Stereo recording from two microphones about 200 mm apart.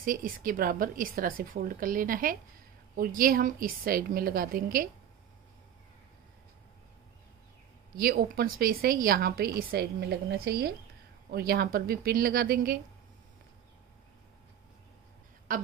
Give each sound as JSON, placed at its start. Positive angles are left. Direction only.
{"t": 0.0, "sound": "speech", "side_deg": -45}
{"t": 8.0, "sound": "speech", "side_deg": -50}
{"t": 15.5, "sound": "a sound", "side_deg": -40}